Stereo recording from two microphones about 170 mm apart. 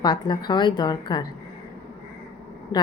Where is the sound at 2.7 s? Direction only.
25° left (ahead or behind).